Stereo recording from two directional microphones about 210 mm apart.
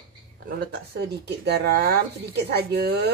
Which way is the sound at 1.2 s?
50° right (ahead or behind).